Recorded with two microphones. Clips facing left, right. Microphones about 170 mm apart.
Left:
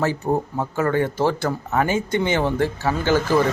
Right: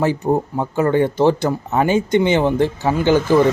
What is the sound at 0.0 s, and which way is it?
Speech, 15° right (ahead or behind).